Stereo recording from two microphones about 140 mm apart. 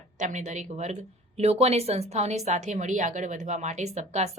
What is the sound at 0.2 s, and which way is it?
A woman's voice, 60° right (ahead or behind).